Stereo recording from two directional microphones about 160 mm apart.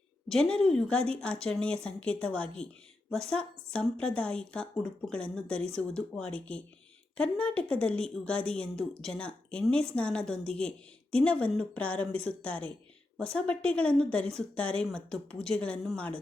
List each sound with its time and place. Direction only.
0.3 s speech: 5° left (ahead or behind)